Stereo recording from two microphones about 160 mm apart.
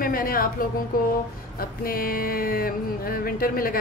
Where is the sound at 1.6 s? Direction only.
65° left (ahead or behind).